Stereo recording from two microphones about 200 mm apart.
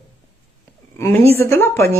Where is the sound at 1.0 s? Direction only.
15° left (ahead or behind).